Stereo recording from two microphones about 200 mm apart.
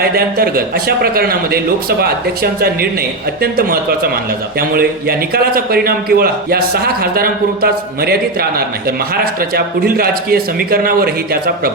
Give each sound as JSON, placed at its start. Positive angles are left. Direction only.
{"t": 0.0, "sound": "a man's voice", "side_deg": -50}
{"t": 4.7, "sound": "a man's voice", "side_deg": -50}